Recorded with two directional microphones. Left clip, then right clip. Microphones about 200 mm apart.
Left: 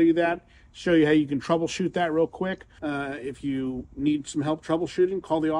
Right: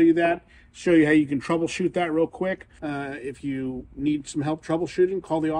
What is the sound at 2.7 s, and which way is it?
Speech, centre (ahead or behind).